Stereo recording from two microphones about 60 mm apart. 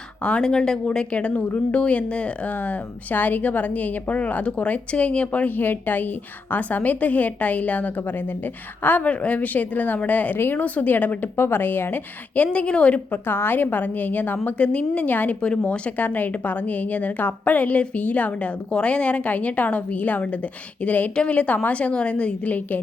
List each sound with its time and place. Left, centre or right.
0.2 s a woman's voice: left
13.2 s a woman's voice: left
15.4 s a woman's voice: centre